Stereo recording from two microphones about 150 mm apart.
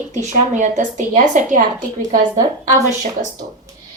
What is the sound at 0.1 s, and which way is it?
A woman's voice, 55° right (ahead or behind).